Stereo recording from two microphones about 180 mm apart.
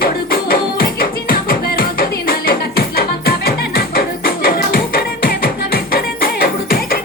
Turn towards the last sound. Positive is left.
turn(degrees=55)  # may be behind; listen again after turning